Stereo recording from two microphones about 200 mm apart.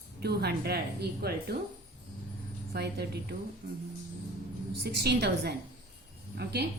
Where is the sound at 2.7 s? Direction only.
55° right (ahead or behind).